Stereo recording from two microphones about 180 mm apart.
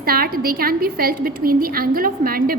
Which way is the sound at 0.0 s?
55° right (ahead or behind).